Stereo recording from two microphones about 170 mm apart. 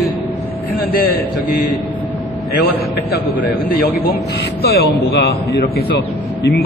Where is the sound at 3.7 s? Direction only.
55° left (ahead or behind).